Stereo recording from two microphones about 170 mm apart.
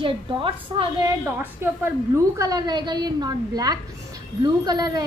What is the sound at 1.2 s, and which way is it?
A woman's voice, 10° right (ahead or behind).